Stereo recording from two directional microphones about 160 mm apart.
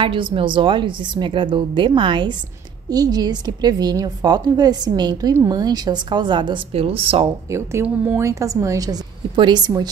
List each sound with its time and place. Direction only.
0.0 s a woman's voice: 30° right (ahead or behind)
7.5 s a woman's voice: 15° right (ahead or behind)